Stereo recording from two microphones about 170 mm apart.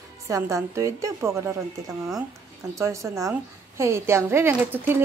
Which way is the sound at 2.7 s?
15° right (ahead or behind).